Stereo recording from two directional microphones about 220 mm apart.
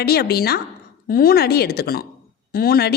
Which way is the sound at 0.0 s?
45° left (ahead or behind).